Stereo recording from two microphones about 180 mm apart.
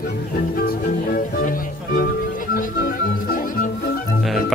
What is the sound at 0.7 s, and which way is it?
Music, 55° left (ahead or behind).